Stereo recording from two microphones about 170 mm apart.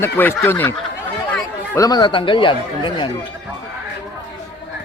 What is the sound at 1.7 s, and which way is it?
Speech, 20° left (ahead or behind).